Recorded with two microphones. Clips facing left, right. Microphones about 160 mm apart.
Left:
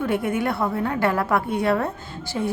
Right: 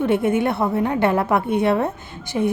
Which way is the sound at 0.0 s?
25° right (ahead or behind).